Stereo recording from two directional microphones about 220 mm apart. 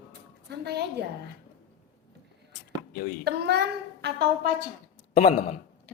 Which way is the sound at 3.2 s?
50° right (ahead or behind).